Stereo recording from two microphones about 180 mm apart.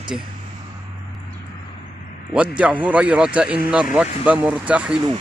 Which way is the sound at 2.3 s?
5° right (ahead or behind).